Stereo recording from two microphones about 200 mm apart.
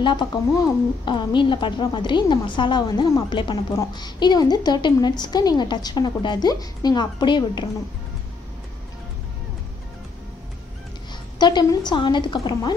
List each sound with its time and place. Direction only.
0.0 s a woman's voice: 20° left (ahead or behind)
11.3 s a woman's voice: 20° left (ahead or behind)